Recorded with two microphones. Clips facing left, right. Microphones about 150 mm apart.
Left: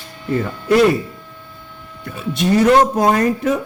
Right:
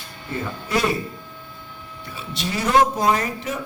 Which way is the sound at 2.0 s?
55° left (ahead or behind).